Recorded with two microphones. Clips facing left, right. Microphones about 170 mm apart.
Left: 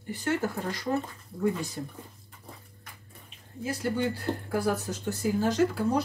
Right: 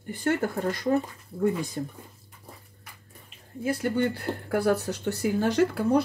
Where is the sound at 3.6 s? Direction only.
55° right (ahead or behind).